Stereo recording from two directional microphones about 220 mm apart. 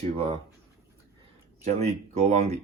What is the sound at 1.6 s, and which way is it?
Speech, 30° right (ahead or behind).